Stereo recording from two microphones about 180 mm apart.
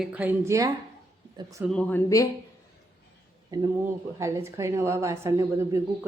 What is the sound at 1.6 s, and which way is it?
Speech, 5° left (ahead or behind).